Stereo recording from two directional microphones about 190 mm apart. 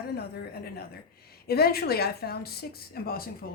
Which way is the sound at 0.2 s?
55° left (ahead or behind).